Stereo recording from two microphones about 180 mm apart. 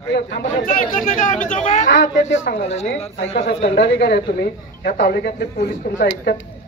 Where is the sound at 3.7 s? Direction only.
65° left (ahead or behind).